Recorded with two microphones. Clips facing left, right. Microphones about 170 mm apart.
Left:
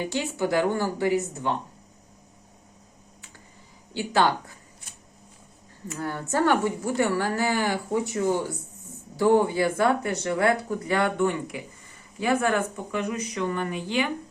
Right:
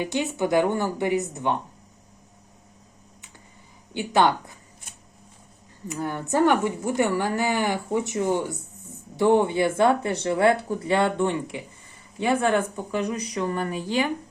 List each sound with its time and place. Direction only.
0.0 s speech: 20° right (ahead or behind)
3.9 s speech: 20° right (ahead or behind)
5.9 s speech: 15° right (ahead or behind); by 14.1 s 35° right (ahead or behind)